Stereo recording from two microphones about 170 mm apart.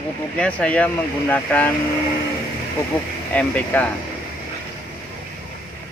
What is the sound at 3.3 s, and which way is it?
Speech, 10° left (ahead or behind).